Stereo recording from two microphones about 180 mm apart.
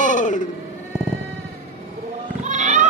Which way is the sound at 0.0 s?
45° left (ahead or behind).